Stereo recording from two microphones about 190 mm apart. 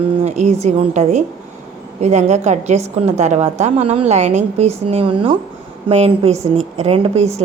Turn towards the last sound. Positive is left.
turn(degrees=-35)  # may be behind; listen again after turning